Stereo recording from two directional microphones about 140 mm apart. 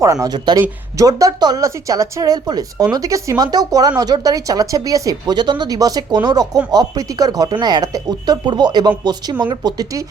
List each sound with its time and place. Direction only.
0.0 s speech: 25° right (ahead or behind)